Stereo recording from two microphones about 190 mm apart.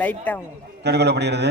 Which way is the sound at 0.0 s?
10° left (ahead or behind).